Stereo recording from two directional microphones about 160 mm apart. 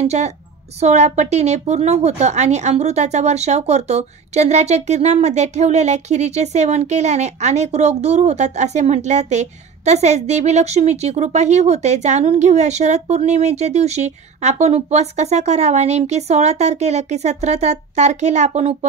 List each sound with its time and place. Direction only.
0.0 s a woman's voice: 45° right (ahead or behind)